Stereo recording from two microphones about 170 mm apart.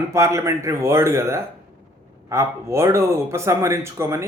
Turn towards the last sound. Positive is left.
turn(degrees=-15)  # may be behind; listen again after turning